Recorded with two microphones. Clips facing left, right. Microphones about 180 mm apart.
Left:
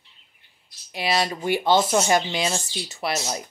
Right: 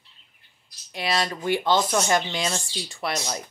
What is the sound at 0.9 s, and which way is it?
Speech, 10° left (ahead or behind).